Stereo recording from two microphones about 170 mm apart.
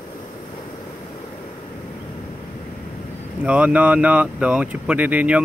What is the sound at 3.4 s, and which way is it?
Speech, 10° right (ahead or behind).